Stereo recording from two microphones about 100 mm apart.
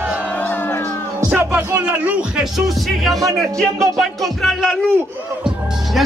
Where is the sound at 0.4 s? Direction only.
20° left (ahead or behind).